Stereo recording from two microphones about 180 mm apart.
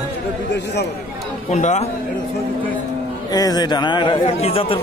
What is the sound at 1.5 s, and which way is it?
Speech, 40° left (ahead or behind).